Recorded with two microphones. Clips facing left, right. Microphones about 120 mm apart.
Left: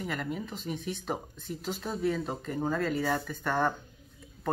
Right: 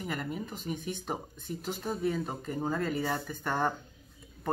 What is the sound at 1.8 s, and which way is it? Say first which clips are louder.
Speech: left 1 dB; 10° right (ahead or behind).